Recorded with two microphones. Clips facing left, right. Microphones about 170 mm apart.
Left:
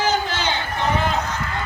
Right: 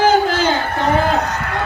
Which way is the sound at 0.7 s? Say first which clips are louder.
Right 6 dB; 60° right (ahead or behind).